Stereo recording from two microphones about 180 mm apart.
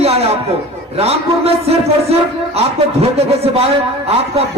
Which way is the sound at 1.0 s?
35° right (ahead or behind).